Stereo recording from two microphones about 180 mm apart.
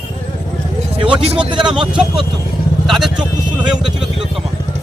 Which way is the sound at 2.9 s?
Centre (ahead or behind).